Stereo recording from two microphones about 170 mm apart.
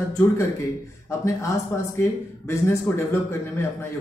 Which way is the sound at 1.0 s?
15° left (ahead or behind).